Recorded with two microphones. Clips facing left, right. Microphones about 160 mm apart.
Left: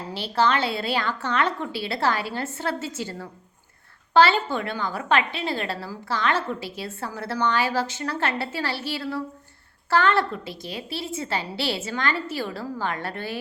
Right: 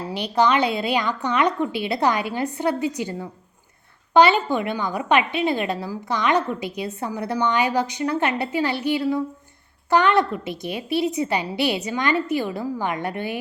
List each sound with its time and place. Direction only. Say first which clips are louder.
0.1 s a woman's voice: right 3 dB; 15° right (ahead or behind)